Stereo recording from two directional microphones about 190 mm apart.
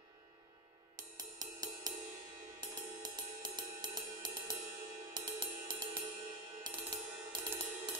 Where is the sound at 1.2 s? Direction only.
20° right (ahead or behind).